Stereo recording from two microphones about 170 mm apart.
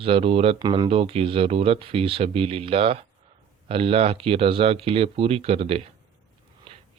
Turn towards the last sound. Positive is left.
turn(degrees=-35)  # may be behind; listen again after turning